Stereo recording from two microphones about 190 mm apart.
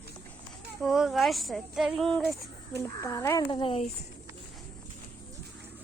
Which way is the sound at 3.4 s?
25° left (ahead or behind).